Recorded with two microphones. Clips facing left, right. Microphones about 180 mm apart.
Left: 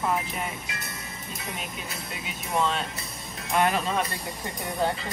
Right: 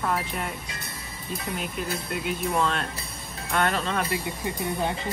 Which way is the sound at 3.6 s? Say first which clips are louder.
Left 1 dB; 15° left (ahead or behind).